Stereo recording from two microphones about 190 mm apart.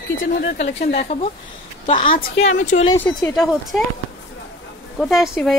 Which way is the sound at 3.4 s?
Centre (ahead or behind).